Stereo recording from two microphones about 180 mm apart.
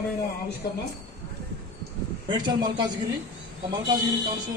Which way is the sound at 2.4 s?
25° right (ahead or behind).